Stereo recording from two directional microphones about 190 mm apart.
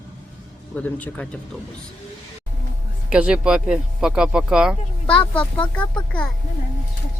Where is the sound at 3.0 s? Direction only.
5° right (ahead or behind).